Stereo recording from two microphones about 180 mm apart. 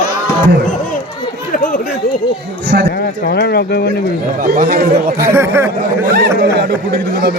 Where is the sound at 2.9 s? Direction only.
60° left (ahead or behind).